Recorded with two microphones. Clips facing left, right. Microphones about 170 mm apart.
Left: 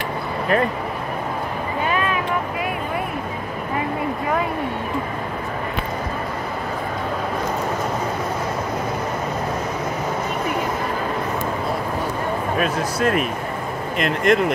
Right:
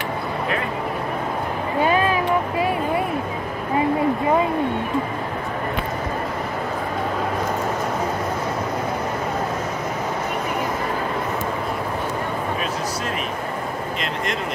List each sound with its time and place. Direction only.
1.9 s vehicle: 30° right (ahead or behind)
12.5 s a sound: 55° left (ahead or behind)
13.9 s speech: 55° left (ahead or behind)